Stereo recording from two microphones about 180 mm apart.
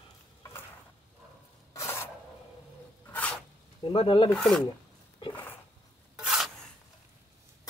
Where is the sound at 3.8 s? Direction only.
30° left (ahead or behind).